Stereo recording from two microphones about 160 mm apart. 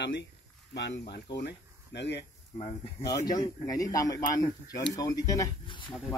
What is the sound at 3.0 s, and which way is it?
A man's voice, 20° left (ahead or behind).